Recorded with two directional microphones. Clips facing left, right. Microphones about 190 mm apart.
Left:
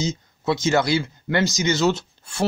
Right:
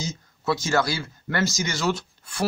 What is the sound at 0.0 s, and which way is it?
Speech, 20° left (ahead or behind).